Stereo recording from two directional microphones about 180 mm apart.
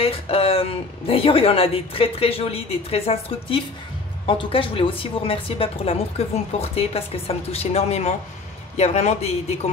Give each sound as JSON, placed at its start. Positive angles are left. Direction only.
{"t": 0.0, "sound": "a woman's voice", "side_deg": 30}